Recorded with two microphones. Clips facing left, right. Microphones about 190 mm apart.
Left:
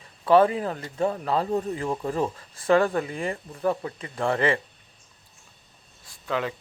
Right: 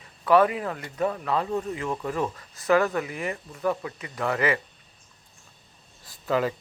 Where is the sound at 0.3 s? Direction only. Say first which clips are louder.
Left 2 dB; 30° left (ahead or behind).